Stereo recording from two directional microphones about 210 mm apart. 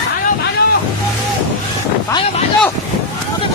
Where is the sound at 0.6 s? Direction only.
45° left (ahead or behind).